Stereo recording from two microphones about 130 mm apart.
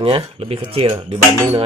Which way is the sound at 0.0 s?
45° right (ahead or behind).